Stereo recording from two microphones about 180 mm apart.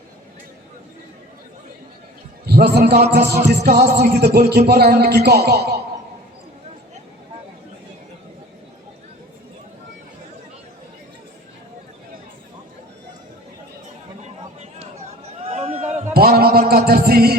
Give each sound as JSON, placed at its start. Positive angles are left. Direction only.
{"t": 2.5, "sound": "a man's voice", "side_deg": -65}
{"t": 3.1, "sound": "music", "side_deg": -70}
{"t": 3.8, "sound": "a man's voice", "side_deg": -65}
{"t": 14.6, "sound": "a sound", "side_deg": -35}
{"t": 16.1, "sound": "music", "side_deg": -60}